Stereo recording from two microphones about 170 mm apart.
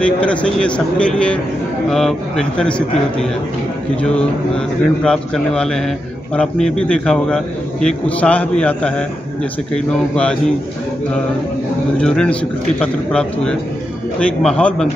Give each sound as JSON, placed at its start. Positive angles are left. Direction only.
{"t": 0.0, "sound": "a man's voice", "side_deg": 5}
{"t": 3.9, "sound": "a man's voice", "side_deg": 5}
{"t": 12.0, "sound": "a man's voice", "side_deg": 5}